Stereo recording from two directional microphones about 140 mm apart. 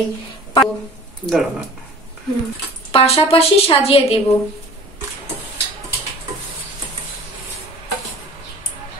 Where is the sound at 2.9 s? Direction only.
40° left (ahead or behind).